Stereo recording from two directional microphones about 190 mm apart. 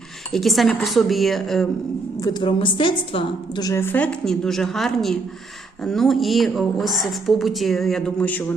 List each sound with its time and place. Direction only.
0.3 s a woman's voice: centre (ahead or behind)
2.2 s a woman's voice: 25° left (ahead or behind); by 8.4 s 10° left (ahead or behind)